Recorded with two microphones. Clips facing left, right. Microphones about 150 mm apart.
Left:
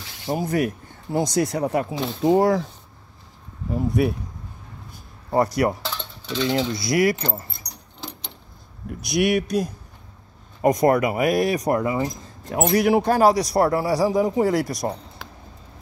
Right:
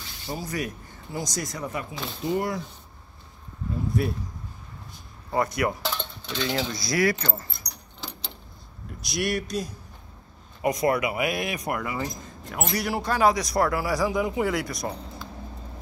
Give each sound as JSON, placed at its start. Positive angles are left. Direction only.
{"t": 0.3, "sound": "speech", "side_deg": 55}
{"t": 3.7, "sound": "speech", "side_deg": 70}
{"t": 5.3, "sound": "speech", "side_deg": 40}
{"t": 5.9, "sound": "coin", "side_deg": 0}
{"t": 6.4, "sound": "speech", "side_deg": 25}
{"t": 8.8, "sound": "speech", "side_deg": 60}
{"t": 10.6, "sound": "speech", "side_deg": 45}
{"t": 11.8, "sound": "speech", "side_deg": 25}
{"t": 12.6, "sound": "speech", "side_deg": 55}
{"t": 13.2, "sound": "speech", "side_deg": 35}
{"t": 15.2, "sound": "vehicle", "side_deg": 90}